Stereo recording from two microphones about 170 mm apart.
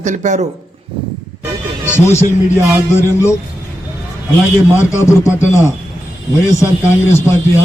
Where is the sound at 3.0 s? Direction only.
15° left (ahead or behind).